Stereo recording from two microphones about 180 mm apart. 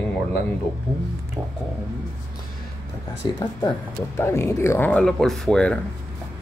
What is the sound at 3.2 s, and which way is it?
Speech, 25° left (ahead or behind).